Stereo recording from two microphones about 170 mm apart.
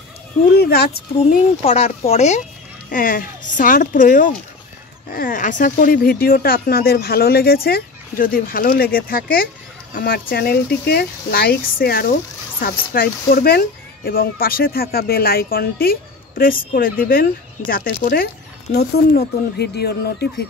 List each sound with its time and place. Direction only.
0.6 s speech: 70° left (ahead or behind)
1.6 s speech: 40° left (ahead or behind); by 18.3 s 55° left (ahead or behind)
18.8 s speech: 70° left (ahead or behind)